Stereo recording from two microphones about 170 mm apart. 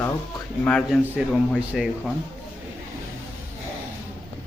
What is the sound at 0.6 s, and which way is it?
A man's voice, 5° left (ahead or behind).